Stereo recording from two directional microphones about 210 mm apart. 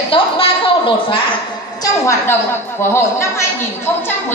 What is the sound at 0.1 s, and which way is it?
A woman's voice, 25° left (ahead or behind).